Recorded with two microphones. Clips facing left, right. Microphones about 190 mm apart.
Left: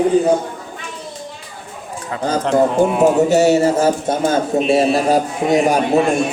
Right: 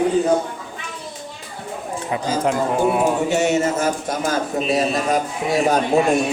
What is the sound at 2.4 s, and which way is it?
Speech, 10° right (ahead or behind).